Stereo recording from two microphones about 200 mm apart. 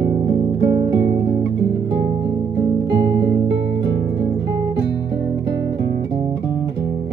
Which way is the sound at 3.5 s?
60° right (ahead or behind).